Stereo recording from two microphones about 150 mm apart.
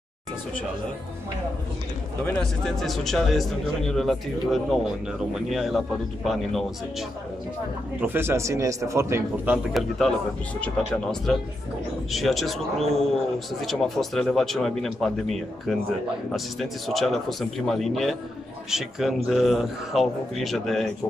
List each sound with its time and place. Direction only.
2.2 s a man's voice: centre (ahead or behind)
8.0 s a man's voice: 15° right (ahead or behind)
9.8 s a man's voice: centre (ahead or behind)